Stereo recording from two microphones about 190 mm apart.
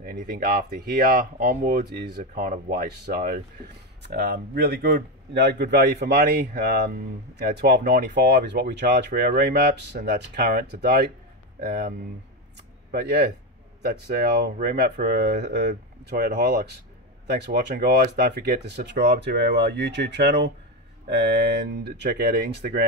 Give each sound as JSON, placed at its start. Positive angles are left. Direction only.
{"t": 0.0, "sound": "speech", "side_deg": -50}
{"t": 12.9, "sound": "speech", "side_deg": -60}